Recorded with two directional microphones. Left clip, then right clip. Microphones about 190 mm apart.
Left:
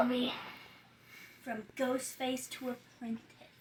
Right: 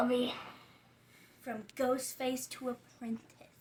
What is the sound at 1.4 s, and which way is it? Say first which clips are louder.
A woman's voice: right 2 dB; 20° right (ahead or behind).